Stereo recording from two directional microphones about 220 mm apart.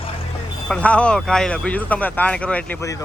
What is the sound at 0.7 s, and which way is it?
Speech, 5° left (ahead or behind).